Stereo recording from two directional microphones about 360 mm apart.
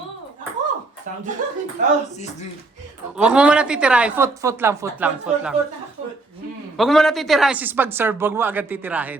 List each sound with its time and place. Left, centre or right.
1.4 s speech: right
3.2 s a woman's voice: centre
6.7 s a woman's voice: centre